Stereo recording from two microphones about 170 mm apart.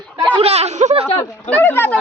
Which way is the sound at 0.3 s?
35° right (ahead or behind).